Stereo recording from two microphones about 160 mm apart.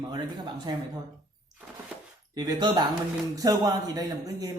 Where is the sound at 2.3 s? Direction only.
25° right (ahead or behind).